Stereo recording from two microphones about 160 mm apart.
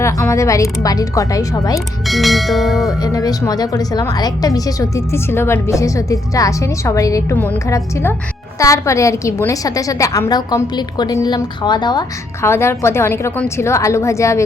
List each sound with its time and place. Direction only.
0.0 s a woman's voice: 20° left (ahead or behind)
2.0 s bell: centre (ahead or behind)
3.0 s a woman's voice: 20° left (ahead or behind)